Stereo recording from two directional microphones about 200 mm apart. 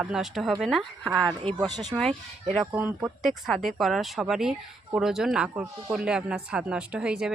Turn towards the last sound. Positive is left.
turn(degrees=-5)  # may be behind; listen again after turning